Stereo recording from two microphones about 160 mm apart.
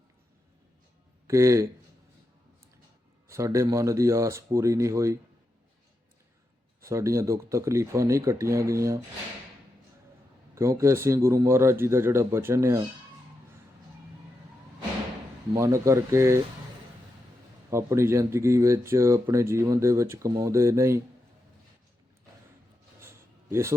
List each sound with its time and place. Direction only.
1.3 s speech: 20° right (ahead or behind)
3.2 s speech: 20° right (ahead or behind)
6.8 s speech: 20° right (ahead or behind)
10.5 s speech: 20° right (ahead or behind)
15.5 s speech: 15° right (ahead or behind)
17.7 s speech: 15° right (ahead or behind)
23.0 s a sound: 15° right (ahead or behind)